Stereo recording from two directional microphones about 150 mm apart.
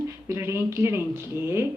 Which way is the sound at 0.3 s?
20° right (ahead or behind).